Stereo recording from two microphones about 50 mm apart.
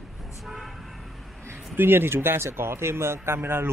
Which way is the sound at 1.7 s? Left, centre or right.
Right.